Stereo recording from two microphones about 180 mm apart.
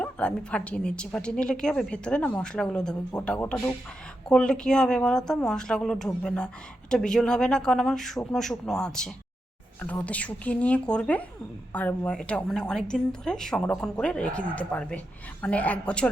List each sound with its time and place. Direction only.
0.0 s a woman's voice: 5° left (ahead or behind)